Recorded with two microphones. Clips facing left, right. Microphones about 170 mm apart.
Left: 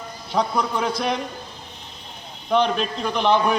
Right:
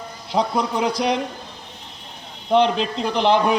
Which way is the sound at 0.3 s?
25° right (ahead or behind).